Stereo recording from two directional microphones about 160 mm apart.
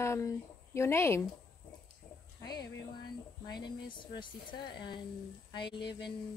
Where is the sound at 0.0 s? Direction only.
15° left (ahead or behind).